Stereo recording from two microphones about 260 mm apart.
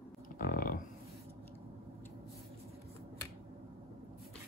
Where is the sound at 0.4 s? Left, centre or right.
Left.